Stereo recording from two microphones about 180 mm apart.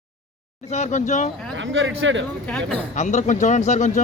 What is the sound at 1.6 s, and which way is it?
Speech, 90° right.